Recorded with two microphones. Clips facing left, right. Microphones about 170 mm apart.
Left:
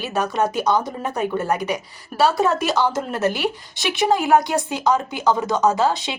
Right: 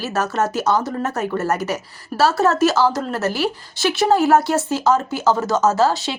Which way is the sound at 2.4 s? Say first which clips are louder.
Right 4 dB; centre (ahead or behind).